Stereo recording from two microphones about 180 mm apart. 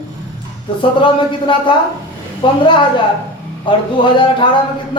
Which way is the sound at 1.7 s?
25° left (ahead or behind).